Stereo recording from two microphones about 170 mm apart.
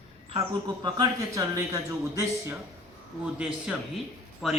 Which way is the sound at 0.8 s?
25° right (ahead or behind).